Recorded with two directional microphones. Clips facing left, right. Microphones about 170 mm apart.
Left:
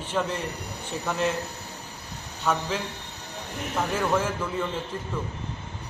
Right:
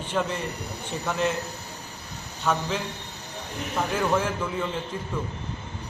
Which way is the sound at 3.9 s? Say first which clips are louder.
Right 1 dB; centre (ahead or behind).